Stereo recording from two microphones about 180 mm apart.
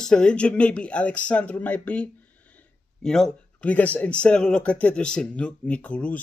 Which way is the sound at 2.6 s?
5° left (ahead or behind).